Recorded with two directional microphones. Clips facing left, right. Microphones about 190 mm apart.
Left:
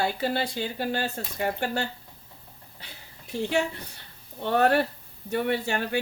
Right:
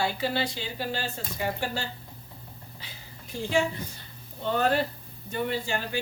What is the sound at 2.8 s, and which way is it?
Speech, 65° left (ahead or behind).